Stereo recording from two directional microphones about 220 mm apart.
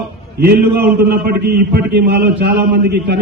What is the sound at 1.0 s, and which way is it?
A man's voice, 45° right (ahead or behind).